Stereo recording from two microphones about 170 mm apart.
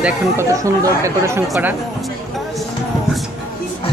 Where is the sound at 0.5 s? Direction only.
20° right (ahead or behind).